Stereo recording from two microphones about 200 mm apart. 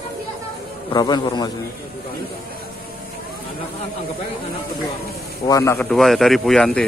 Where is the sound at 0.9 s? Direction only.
20° left (ahead or behind).